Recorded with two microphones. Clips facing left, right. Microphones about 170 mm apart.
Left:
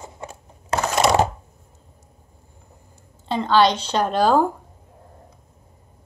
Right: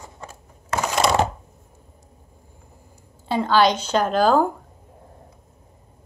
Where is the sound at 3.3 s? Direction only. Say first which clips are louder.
Even; 5° right (ahead or behind).